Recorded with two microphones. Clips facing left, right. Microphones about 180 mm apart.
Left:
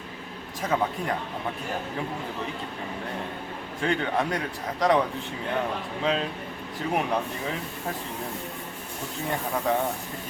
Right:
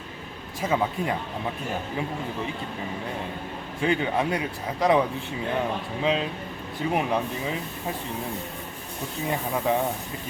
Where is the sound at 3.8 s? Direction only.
5° right (ahead or behind).